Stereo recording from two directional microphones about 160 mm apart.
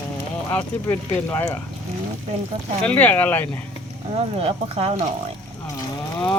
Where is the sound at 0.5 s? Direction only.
15° left (ahead or behind).